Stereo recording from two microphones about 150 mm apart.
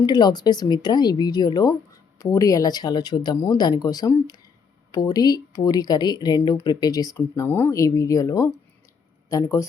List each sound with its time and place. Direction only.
0.0 s speech: 30° left (ahead or behind)